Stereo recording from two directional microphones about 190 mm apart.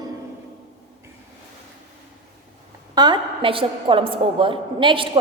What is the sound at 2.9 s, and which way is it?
A woman's voice, 25° right (ahead or behind).